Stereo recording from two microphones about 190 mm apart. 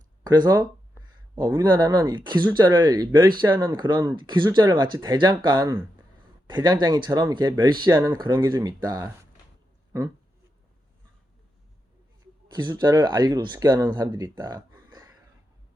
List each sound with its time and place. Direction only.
0.3 s speech: 20° right (ahead or behind)
5.5 s speech: 10° right (ahead or behind)
6.5 s speech: 25° right (ahead or behind)
12.6 s speech: 20° right (ahead or behind)